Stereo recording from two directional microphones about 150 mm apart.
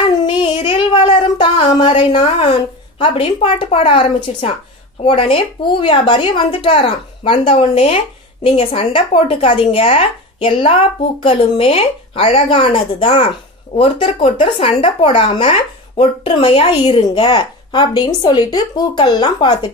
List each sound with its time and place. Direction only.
0.0 s child singing: 30° left (ahead or behind)
3.0 s speech: 35° left (ahead or behind)